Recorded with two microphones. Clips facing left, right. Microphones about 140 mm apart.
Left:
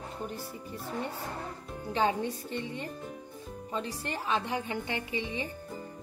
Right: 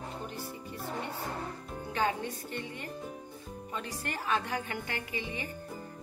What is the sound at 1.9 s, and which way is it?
A woman's voice, 25° left (ahead or behind).